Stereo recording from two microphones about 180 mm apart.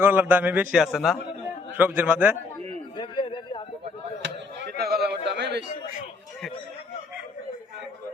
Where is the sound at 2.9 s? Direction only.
25° left (ahead or behind).